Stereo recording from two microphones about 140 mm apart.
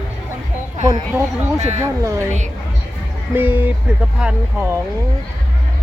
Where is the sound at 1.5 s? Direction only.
55° right (ahead or behind).